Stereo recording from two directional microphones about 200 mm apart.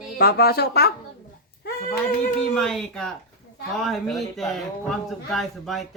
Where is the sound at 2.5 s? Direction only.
5° left (ahead or behind).